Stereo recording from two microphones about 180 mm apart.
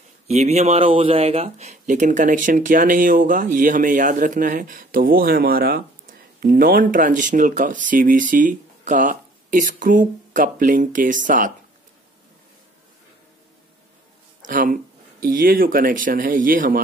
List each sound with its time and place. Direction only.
0.3 s speech: 35° right (ahead or behind)
14.4 s speech: 50° right (ahead or behind)